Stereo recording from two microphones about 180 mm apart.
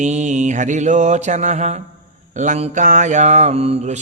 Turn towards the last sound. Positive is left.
turn(degrees=-35)  # may be behind; listen again after turning